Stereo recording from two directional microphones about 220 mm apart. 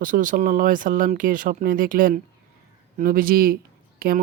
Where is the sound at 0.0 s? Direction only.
40° right (ahead or behind).